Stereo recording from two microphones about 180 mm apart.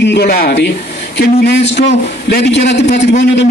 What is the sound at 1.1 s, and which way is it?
Speech, 70° left (ahead or behind).